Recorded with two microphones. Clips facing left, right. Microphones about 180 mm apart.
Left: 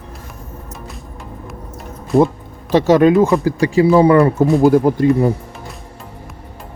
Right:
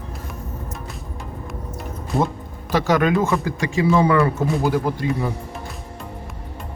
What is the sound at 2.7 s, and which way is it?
Speech, 20° left (ahead or behind).